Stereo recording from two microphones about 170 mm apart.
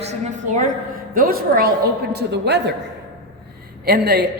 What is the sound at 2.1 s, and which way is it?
Speech, 80° right.